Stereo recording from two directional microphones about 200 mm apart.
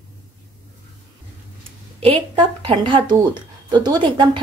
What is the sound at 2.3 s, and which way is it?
Speech, 25° right (ahead or behind).